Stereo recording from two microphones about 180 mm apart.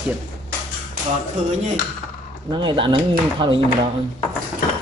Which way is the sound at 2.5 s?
25° right (ahead or behind).